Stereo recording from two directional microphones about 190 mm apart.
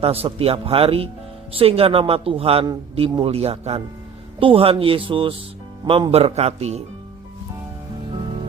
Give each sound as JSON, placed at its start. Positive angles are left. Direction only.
{"t": 0.0, "sound": "a man's voice", "side_deg": -30}